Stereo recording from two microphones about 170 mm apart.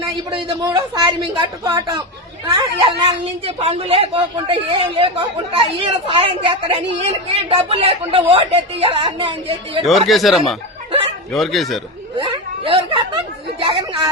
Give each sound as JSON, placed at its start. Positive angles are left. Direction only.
{"t": 0.3, "sound": "a man's voice", "side_deg": -30}
{"t": 9.8, "sound": "speech", "side_deg": 0}
{"t": 12.1, "sound": "a man's voice", "side_deg": -30}